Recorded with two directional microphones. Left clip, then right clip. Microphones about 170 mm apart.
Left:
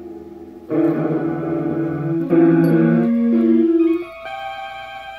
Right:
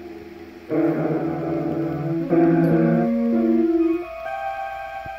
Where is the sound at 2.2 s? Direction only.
5° left (ahead or behind).